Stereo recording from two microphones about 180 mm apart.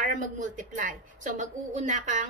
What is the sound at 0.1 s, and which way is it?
A woman's voice, 45° right (ahead or behind).